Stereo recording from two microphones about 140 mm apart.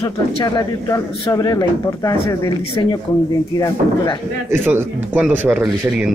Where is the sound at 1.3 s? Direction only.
25° left (ahead or behind).